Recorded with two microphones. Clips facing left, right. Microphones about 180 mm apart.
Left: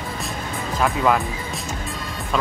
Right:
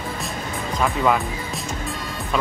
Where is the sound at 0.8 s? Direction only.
Centre (ahead or behind).